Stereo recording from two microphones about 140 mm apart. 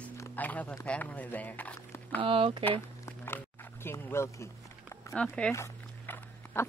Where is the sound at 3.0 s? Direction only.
15° left (ahead or behind).